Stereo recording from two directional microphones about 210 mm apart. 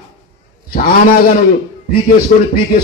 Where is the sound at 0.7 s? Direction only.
45° left (ahead or behind).